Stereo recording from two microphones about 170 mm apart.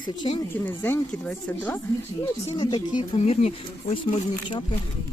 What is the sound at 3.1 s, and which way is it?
Speech, 40° left (ahead or behind).